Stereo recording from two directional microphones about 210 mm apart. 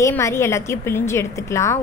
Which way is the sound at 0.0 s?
15° left (ahead or behind).